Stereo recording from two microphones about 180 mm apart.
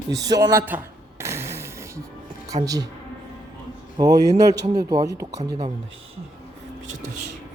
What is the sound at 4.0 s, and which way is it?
Speech, 20° right (ahead or behind).